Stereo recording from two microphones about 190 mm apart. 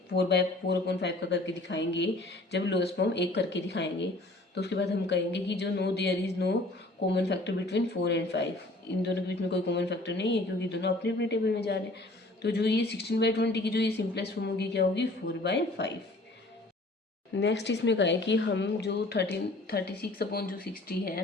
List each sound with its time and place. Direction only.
0.1 s a woman's voice: 60° left (ahead or behind)
17.3 s a woman's voice: 70° left (ahead or behind)